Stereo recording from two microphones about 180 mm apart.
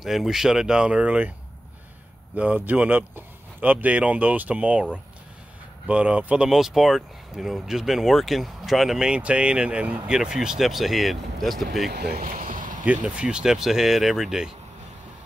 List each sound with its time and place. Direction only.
0.0 s speech: centre (ahead or behind)
2.3 s speech: 10° right (ahead or behind)
5.9 s speech: 5° right (ahead or behind)
11.9 s speech: 60° right (ahead or behind)
12.8 s speech: 5° right (ahead or behind)